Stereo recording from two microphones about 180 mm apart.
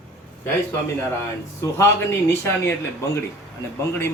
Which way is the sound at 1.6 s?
15° left (ahead or behind).